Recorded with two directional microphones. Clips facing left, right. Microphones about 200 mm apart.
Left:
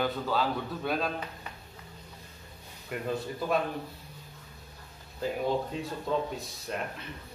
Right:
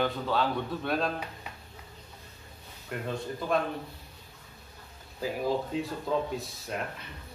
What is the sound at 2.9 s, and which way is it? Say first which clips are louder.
Speech: even; 5° left (ahead or behind).